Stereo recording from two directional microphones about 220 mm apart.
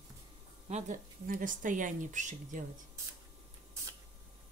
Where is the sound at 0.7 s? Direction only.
35° right (ahead or behind).